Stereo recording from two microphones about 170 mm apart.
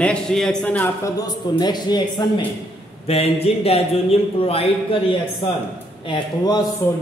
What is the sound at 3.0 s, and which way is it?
A man's voice, 35° left (ahead or behind).